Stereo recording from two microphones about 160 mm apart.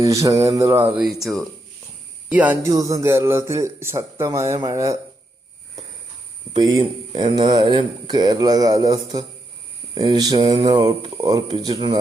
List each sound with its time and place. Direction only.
0.0 s speech: 20° right (ahead or behind)
0.9 s speech: centre (ahead or behind)
2.6 s speech: 20° right (ahead or behind)
6.5 s speech: 25° right (ahead or behind)